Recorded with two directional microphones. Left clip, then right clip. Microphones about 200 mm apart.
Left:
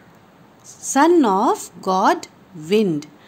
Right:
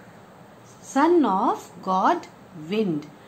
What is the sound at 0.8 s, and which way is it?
A woman's voice, 50° left (ahead or behind).